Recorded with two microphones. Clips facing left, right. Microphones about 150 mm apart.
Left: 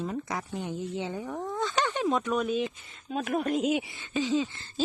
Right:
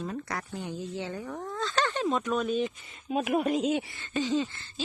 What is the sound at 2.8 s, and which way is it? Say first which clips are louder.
Speech: right 3 dB; 10° right (ahead or behind).